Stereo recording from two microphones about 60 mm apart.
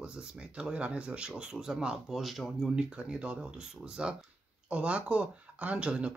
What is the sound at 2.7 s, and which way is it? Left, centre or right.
Speech, centre.